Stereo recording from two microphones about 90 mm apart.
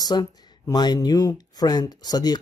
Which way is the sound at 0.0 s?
50° left (ahead or behind).